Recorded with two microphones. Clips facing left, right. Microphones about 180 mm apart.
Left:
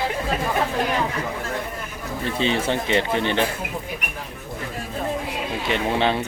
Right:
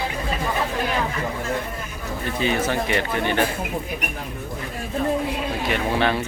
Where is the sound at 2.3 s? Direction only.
25° left (ahead or behind).